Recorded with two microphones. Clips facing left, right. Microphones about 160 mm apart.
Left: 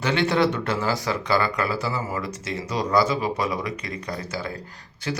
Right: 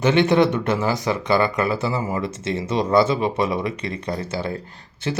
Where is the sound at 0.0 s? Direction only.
20° right (ahead or behind).